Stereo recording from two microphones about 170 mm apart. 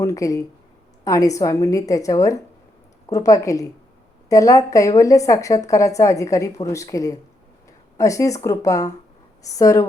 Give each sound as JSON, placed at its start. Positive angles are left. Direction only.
{"t": 0.0, "sound": "a woman's voice", "side_deg": 20}